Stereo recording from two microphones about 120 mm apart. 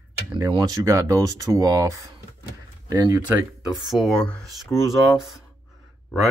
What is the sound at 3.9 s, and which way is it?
Speech, 5° left (ahead or behind).